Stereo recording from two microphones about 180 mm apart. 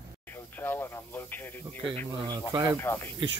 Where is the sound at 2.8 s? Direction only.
15° left (ahead or behind).